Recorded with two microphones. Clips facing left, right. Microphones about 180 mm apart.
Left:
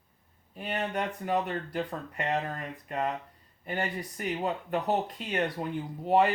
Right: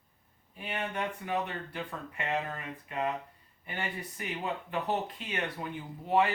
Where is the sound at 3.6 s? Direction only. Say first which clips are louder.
Left 5 dB; 40° left (ahead or behind).